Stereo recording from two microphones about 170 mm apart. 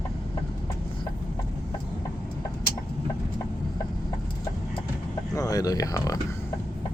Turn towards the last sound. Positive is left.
turn(degrees=20)  # may be behind; listen again after turning